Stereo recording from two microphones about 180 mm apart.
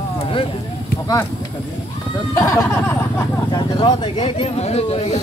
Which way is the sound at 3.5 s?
30° left (ahead or behind).